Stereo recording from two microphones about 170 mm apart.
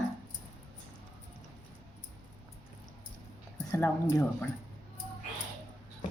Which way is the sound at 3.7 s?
15° left (ahead or behind).